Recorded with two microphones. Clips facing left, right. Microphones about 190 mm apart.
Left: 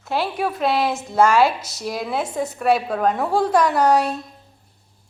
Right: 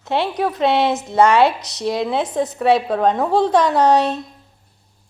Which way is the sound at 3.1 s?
20° right (ahead or behind).